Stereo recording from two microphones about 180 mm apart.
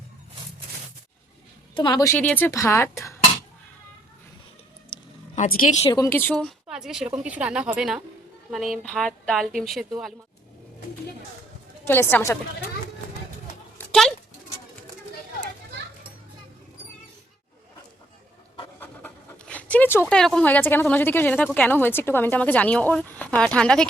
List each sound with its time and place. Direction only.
1.7 s a woman's voice: 25° left (ahead or behind)
4.9 s a sound: 25° left (ahead or behind)
5.3 s speech: 45° left (ahead or behind)
5.9 s a woman's voice: 15° left (ahead or behind); by 10.2 s centre (ahead or behind)
11.9 s a woman's voice: 10° left (ahead or behind)
13.7 s clip-clop: 5° left (ahead or behind)
18.8 s speech: 10° left (ahead or behind)